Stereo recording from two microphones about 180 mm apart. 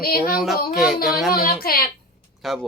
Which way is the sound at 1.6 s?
55° left (ahead or behind).